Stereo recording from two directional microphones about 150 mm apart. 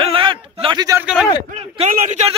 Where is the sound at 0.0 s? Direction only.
35° right (ahead or behind).